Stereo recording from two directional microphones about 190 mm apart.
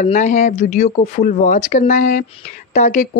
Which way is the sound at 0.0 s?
40° left (ahead or behind).